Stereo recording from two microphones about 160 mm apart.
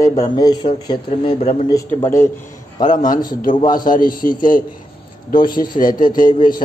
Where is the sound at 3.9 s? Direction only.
60° left (ahead or behind).